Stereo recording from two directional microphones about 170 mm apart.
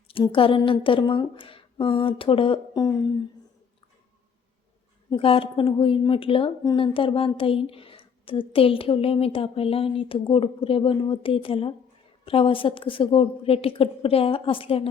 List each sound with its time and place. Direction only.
0.1 s a woman's voice: 30° left (ahead or behind)
5.1 s a woman's voice: 30° left (ahead or behind)